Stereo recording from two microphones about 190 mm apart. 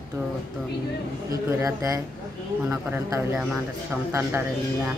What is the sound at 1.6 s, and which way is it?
Speech, 15° right (ahead or behind).